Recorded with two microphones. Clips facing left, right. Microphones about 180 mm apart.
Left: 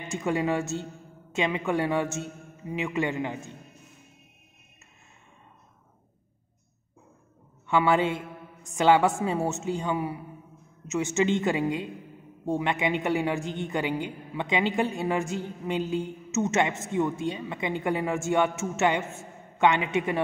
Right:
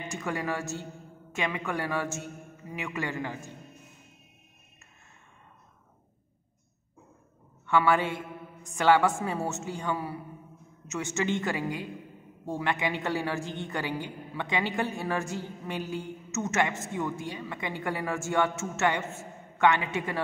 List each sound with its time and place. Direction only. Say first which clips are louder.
0.1 s a man's voice: left 7 dB; 25° left (ahead or behind)
7.6 s a man's voice: left 2 dB; 20° left (ahead or behind)